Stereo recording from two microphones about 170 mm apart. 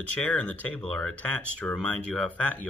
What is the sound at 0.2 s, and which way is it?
Speech, 10° left (ahead or behind).